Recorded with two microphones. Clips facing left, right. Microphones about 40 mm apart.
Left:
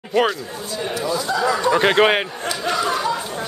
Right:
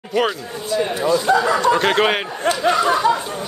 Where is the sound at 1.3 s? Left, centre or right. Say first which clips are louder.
Right 8 dB; right.